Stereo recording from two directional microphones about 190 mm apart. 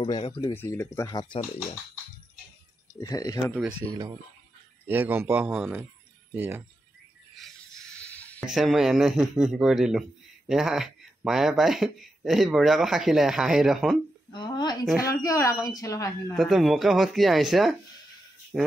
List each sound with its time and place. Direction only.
0.0 s speech: 30° left (ahead or behind)
0.4 s speech: 15° left (ahead or behind)
3.0 s speech: 20° left (ahead or behind)
3.4 s speech: centre (ahead or behind)
3.9 s a man's voice: 20° right (ahead or behind)
7.3 s speech: centre (ahead or behind)
14.3 s a woman's voice: 25° left (ahead or behind)
16.3 s speech: centre (ahead or behind)